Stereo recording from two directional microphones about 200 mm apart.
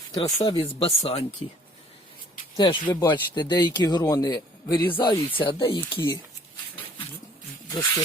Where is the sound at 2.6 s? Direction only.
25° left (ahead or behind).